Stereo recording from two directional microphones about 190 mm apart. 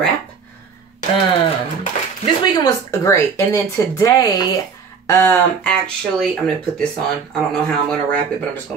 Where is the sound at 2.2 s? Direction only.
20° left (ahead or behind).